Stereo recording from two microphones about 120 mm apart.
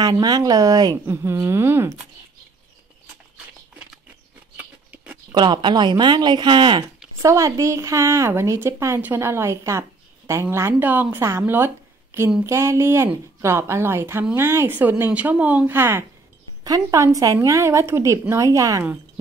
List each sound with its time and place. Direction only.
0.0 s speech: 35° right (ahead or behind)
1.0 s speech: 20° right (ahead or behind)
4.6 s a sound: 15° right (ahead or behind)
5.3 s speech: 40° right (ahead or behind)
7.2 s speech: 25° right (ahead or behind)